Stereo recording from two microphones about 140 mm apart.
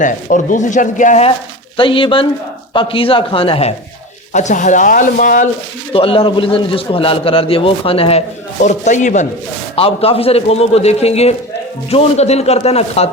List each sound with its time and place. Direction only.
0.0 s speech: 65° left (ahead or behind)
1.7 s a man's voice: 40° left (ahead or behind)
4.3 s speech: 60° left (ahead or behind)
5.9 s a man's voice: 40° left (ahead or behind)
8.6 s speech: 60° left (ahead or behind)
9.7 s a man's voice: 45° left (ahead or behind)